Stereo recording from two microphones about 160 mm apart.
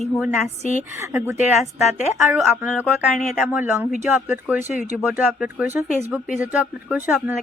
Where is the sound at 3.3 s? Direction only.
10° right (ahead or behind).